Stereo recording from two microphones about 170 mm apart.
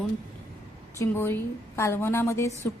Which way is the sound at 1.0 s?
15° left (ahead or behind).